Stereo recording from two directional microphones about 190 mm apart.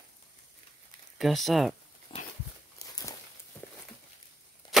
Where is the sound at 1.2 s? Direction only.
Centre (ahead or behind).